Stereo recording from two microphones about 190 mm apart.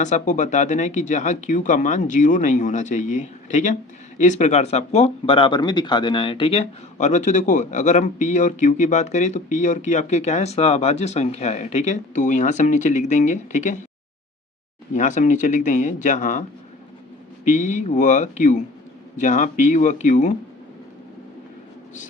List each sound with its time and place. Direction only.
0.0 s speech: 40° left (ahead or behind)
14.9 s speech: 40° left (ahead or behind)
17.4 s speech: 40° left (ahead or behind)